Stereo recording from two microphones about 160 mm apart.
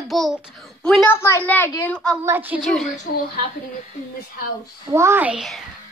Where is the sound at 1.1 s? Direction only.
15° left (ahead or behind).